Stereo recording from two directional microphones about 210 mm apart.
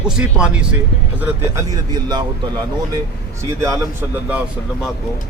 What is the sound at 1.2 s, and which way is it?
Speech, 15° right (ahead or behind).